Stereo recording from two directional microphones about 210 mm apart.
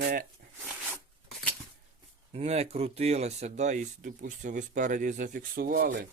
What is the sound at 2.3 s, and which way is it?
Speech, 30° right (ahead or behind).